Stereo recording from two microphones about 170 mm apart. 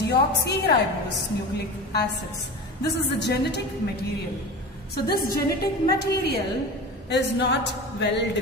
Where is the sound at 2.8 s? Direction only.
75° left (ahead or behind).